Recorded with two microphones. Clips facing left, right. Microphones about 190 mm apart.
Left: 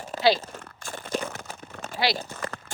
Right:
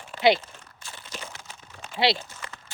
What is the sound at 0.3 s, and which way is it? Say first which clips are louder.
Speech: left 5 dB; 40° left (ahead or behind).